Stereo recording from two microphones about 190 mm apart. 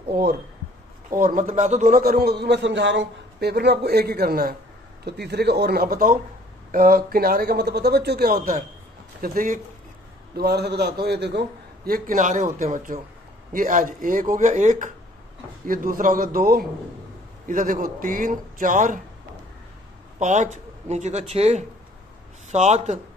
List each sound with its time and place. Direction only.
0.1 s a man's voice: 55° right (ahead or behind)
10.3 s a man's voice: 60° right (ahead or behind)
20.2 s speech: 40° right (ahead or behind)